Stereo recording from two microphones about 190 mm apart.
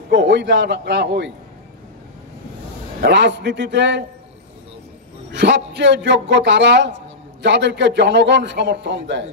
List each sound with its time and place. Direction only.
0.1 s a man's voice: 65° right (ahead or behind)
3.0 s a man's voice: 65° right (ahead or behind)
5.3 s a man's voice: 65° right (ahead or behind)